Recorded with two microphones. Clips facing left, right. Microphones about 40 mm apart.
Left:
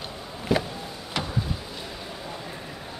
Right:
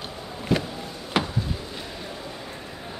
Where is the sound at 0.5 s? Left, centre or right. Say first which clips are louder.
Even; centre.